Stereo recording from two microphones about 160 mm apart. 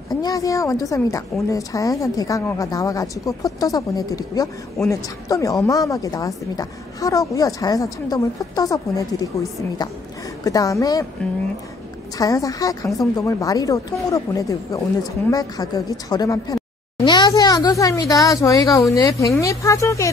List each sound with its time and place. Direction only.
0.2 s a woman's voice: 20° left (ahead or behind)
12.2 s a woman's voice: 20° left (ahead or behind)